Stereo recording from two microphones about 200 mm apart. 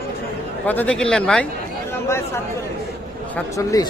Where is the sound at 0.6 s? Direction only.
10° left (ahead or behind).